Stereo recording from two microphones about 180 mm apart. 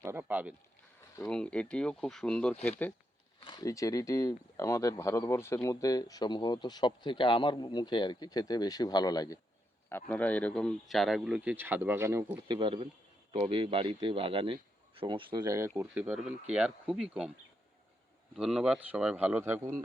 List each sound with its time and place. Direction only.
0.0 s a sound: 15° right (ahead or behind)
1.3 s speech: 5° left (ahead or behind)
3.4 s speech: 25° left (ahead or behind)
10.1 s speech: 10° left (ahead or behind); by 12.4 s 15° right (ahead or behind)
12.5 s speech: 30° right (ahead or behind); by 17.3 s 5° right (ahead or behind)
18.3 s speech: 5° right (ahead or behind)